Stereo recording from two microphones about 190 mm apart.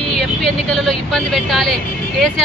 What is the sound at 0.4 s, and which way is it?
Speech, centre (ahead or behind).